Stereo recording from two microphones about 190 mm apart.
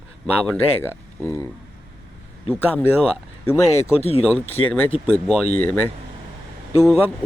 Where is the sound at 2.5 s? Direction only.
10° left (ahead or behind).